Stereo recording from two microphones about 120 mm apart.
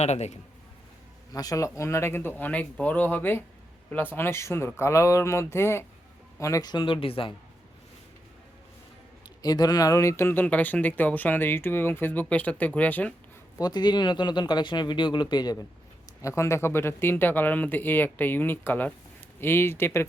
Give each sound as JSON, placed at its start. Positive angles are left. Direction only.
{"t": 0.0, "sound": "a man's voice", "side_deg": 65}
{"t": 1.3, "sound": "speech", "side_deg": 30}
{"t": 9.2, "sound": "speech", "side_deg": 35}
{"t": 13.6, "sound": "speech", "side_deg": 35}
{"t": 16.2, "sound": "speech", "side_deg": 25}